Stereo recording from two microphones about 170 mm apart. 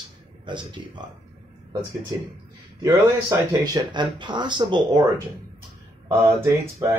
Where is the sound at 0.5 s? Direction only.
25° right (ahead or behind).